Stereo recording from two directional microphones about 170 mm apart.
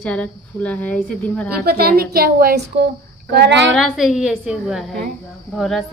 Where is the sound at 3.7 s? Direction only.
Centre (ahead or behind).